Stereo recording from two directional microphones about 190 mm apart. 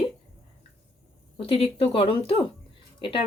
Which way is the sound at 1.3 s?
30° left (ahead or behind).